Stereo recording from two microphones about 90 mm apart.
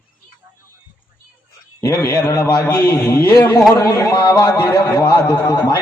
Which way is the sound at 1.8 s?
40° left (ahead or behind).